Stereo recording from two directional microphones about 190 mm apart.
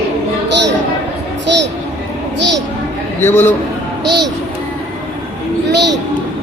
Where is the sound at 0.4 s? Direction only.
65° right (ahead or behind).